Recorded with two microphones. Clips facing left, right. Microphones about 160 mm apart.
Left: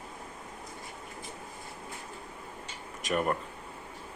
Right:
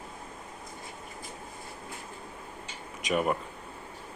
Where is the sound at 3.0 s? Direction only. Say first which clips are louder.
Right 2 dB; 5° right (ahead or behind).